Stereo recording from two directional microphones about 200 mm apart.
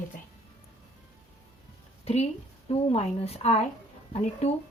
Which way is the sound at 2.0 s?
30° left (ahead or behind).